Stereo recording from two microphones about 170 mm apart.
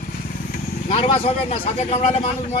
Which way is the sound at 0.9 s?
35° left (ahead or behind).